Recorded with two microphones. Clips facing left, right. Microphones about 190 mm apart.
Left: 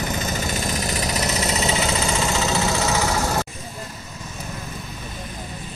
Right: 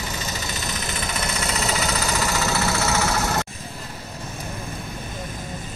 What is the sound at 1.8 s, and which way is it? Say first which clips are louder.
Vehicle: left 2 dB; 25° left (ahead or behind).